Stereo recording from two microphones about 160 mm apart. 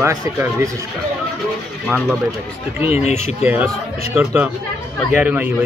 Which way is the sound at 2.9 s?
40° left (ahead or behind).